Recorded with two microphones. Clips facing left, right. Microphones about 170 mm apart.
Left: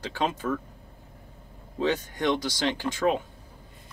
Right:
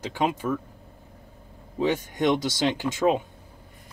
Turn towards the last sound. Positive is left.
turn(degrees=-20)  # may be behind; listen again after turning